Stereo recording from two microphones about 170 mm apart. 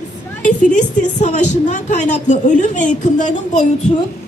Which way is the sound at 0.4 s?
50° left (ahead or behind).